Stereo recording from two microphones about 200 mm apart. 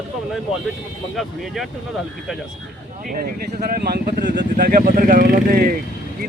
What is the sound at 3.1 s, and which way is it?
Speech, 45° right (ahead or behind).